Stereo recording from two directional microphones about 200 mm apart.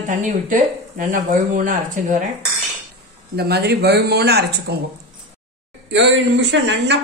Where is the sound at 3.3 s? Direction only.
55° right (ahead or behind).